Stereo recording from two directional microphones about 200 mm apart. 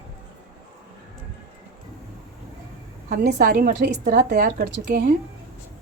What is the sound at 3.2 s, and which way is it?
A woman's voice, 50° right (ahead or behind).